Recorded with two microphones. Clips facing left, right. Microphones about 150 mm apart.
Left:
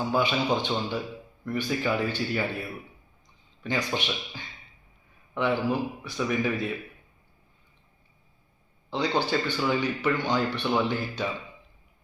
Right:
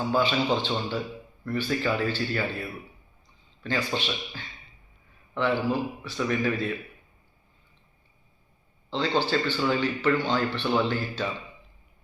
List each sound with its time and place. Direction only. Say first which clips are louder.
0.0 s speech: right 1 dB; 15° left (ahead or behind)
3.6 s speech: even; 15° left (ahead or behind)
8.9 s speech: right 1 dB; 15° left (ahead or behind)